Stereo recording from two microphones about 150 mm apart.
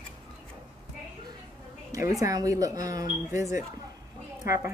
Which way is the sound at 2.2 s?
20° right (ahead or behind).